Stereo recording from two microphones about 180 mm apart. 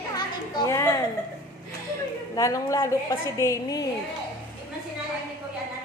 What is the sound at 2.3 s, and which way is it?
A woman's voice, 20° left (ahead or behind).